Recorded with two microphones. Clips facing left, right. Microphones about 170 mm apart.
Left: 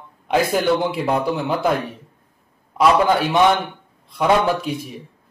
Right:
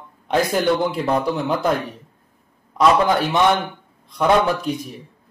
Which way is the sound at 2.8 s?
5° left (ahead or behind).